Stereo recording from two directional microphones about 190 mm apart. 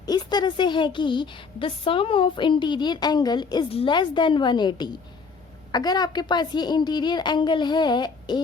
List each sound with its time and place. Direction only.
0.0 s a woman's voice: 20° left (ahead or behind)